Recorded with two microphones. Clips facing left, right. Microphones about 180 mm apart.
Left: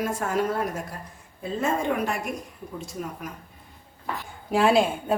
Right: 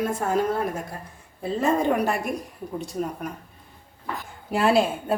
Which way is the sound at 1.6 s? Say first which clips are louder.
Right 4 dB; 40° right (ahead or behind).